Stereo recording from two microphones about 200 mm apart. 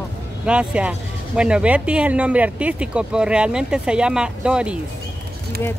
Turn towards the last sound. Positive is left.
turn(degrees=-5)  # may be behind; listen again after turning